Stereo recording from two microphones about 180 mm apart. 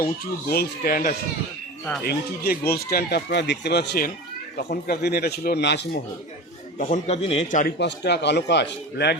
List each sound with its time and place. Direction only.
0.0 s speech: 60° left (ahead or behind)
6.7 s a man's voice: 45° left (ahead or behind)
7.6 s a man's voice: 70° left (ahead or behind)